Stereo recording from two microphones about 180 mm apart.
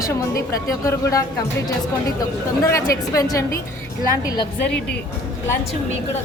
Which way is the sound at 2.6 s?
15° left (ahead or behind).